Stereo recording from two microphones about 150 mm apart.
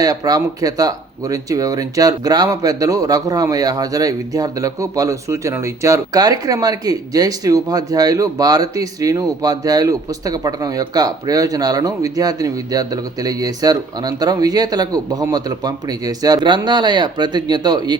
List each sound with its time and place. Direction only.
0.0 s speech: 25° right (ahead or behind)